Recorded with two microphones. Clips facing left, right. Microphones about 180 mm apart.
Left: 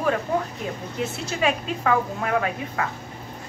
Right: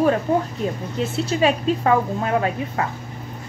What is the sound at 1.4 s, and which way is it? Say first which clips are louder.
A woman's voice: right 4 dB; 30° right (ahead or behind).